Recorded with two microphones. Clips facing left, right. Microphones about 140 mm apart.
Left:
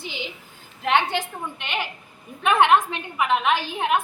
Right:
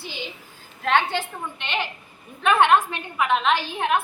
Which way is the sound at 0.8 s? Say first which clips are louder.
Even; 15° left (ahead or behind).